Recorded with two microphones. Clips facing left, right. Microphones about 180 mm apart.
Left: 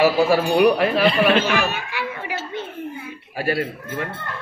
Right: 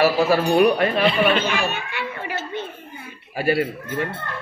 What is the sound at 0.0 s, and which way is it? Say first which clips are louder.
Speech: left 1 dB; 10° left (ahead or behind).